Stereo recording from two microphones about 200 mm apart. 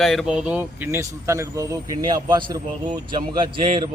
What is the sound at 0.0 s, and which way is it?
A man's voice, centre (ahead or behind).